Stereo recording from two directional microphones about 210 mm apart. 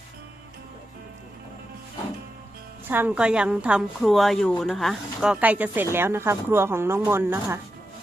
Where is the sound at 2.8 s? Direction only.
10° right (ahead or behind).